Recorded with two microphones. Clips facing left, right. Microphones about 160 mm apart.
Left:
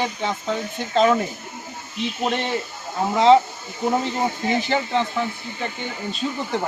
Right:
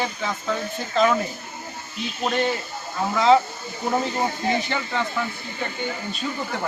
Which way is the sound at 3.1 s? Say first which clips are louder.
Left 3 dB; 25° left (ahead or behind).